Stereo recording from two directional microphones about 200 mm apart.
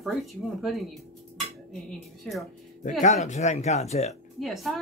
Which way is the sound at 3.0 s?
35° left (ahead or behind).